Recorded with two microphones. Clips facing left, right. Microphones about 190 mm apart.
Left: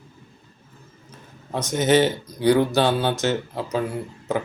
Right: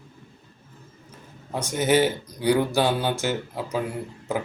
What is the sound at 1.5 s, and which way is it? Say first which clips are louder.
Speech: left 3 dB; 10° right (ahead or behind).